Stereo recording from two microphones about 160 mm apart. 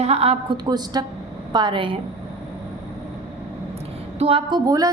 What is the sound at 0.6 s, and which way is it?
A woman's voice, 25° right (ahead or behind).